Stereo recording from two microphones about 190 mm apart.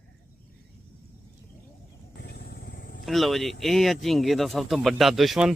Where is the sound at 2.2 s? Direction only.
60° left (ahead or behind).